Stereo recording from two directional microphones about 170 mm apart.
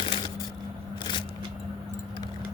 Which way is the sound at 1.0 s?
25° left (ahead or behind).